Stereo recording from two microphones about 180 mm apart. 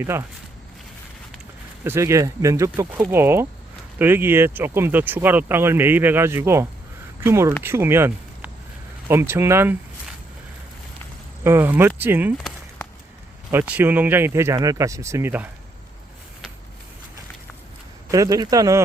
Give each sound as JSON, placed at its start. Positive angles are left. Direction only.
{"t": 0.0, "sound": "speech", "side_deg": -15}
{"t": 1.8, "sound": "speech", "side_deg": -15}
{"t": 11.4, "sound": "speech", "side_deg": -10}
{"t": 13.5, "sound": "speech", "side_deg": -10}
{"t": 18.1, "sound": "speech", "side_deg": -20}